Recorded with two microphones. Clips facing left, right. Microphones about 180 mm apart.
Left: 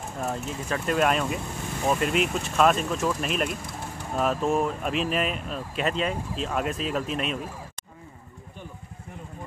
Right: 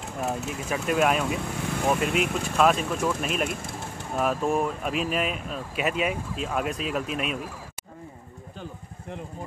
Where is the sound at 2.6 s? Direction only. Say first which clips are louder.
Even; centre (ahead or behind).